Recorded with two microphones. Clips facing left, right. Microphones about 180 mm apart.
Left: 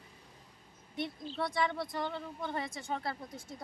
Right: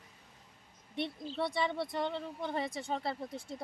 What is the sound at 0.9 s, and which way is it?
Speech, 30° right (ahead or behind).